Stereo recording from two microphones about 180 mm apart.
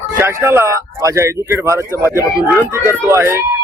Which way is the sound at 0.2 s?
15° right (ahead or behind).